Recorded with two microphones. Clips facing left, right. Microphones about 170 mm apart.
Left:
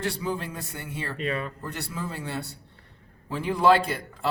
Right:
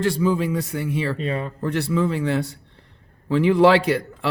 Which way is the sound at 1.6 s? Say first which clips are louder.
Right 12 dB; 90° right.